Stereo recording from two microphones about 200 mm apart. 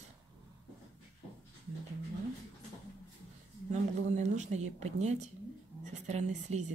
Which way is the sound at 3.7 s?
35° right (ahead or behind).